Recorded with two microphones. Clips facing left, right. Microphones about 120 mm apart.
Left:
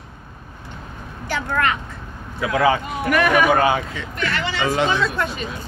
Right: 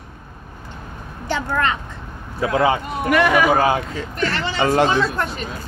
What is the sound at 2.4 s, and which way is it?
A child's voice, 30° right (ahead or behind).